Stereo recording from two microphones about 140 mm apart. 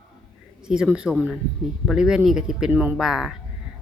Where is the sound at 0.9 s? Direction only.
5° right (ahead or behind).